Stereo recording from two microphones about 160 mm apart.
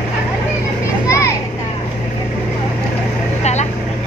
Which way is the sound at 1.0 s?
20° left (ahead or behind).